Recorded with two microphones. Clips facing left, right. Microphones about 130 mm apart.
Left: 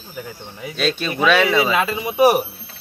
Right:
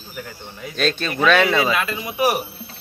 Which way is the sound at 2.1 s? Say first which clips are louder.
Left 6 dB; 30° left (ahead or behind).